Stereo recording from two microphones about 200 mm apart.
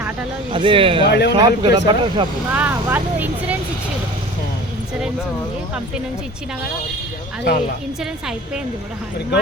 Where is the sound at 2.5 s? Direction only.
10° right (ahead or behind).